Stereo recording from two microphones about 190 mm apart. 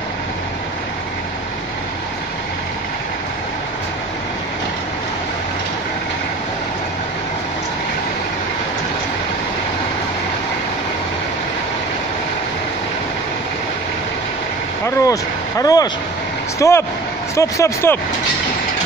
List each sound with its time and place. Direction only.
15.0 s speech: 15° left (ahead or behind)